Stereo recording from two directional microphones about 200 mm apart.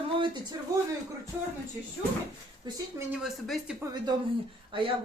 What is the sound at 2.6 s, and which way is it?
Speech, 20° right (ahead or behind).